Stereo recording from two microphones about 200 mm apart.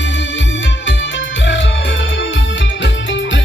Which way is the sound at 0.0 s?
65° left (ahead or behind).